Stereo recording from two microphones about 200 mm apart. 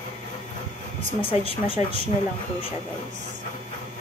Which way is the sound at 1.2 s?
30° left (ahead or behind).